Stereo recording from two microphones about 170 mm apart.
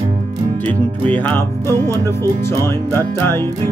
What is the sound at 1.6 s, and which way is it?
Music, 20° right (ahead or behind).